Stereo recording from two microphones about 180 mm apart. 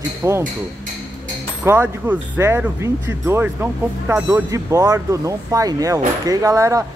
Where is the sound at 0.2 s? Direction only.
15° right (ahead or behind).